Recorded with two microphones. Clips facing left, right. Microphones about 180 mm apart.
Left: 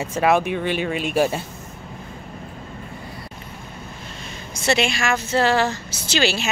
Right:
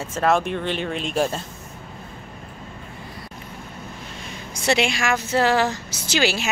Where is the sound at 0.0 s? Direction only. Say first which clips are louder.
Left 2 dB; 10° left (ahead or behind).